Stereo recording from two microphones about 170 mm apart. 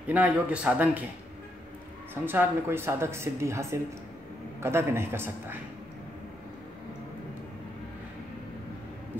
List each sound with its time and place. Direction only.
0.0 s speech: 10° right (ahead or behind)
2.2 s speech: 15° right (ahead or behind)